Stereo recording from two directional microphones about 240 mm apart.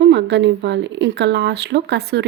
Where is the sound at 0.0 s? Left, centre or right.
Right.